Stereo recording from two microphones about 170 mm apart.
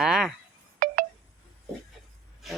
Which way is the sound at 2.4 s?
Centre (ahead or behind).